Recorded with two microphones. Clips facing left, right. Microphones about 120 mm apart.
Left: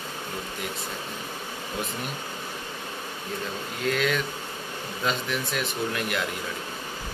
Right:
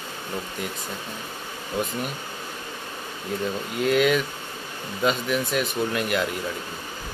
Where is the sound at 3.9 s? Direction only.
5° right (ahead or behind).